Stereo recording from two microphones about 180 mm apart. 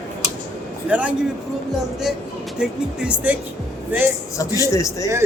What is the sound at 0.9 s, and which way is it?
Speech, 5° right (ahead or behind).